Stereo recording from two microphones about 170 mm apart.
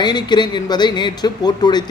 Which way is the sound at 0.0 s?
25° left (ahead or behind).